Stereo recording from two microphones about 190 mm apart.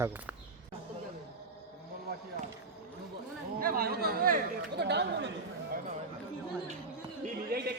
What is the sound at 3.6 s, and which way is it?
Chatter, 50° right (ahead or behind).